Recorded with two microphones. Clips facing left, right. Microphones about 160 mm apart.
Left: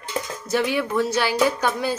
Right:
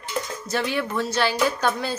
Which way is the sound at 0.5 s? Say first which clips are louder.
Left 4 dB; 10° left (ahead or behind).